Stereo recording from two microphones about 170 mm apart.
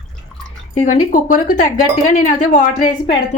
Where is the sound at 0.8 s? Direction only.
45° left (ahead or behind).